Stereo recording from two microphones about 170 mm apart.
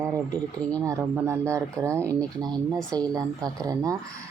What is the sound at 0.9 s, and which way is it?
Speech, 20° right (ahead or behind).